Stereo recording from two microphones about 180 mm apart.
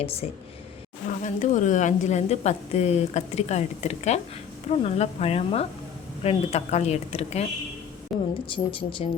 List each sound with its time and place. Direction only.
0.0 s a woman's voice: 35° left (ahead or behind)
1.2 s a woman's voice: 45° left (ahead or behind)
8.1 s a woman's voice: centre (ahead or behind)
8.4 s speech: 30° left (ahead or behind)